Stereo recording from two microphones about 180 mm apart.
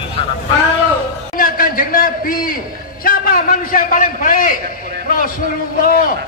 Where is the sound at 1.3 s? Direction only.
50° left (ahead or behind).